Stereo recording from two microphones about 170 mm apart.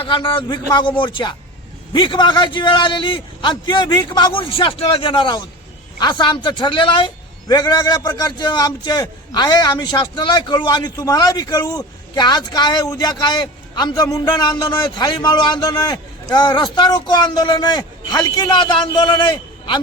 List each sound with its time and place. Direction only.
0.0 s a man's voice: 30° left (ahead or behind)